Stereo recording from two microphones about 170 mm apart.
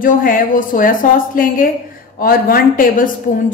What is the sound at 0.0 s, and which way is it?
A woman's voice, 55° left (ahead or behind).